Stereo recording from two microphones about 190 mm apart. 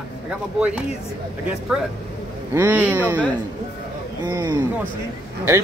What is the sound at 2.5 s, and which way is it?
Speech, 10° right (ahead or behind).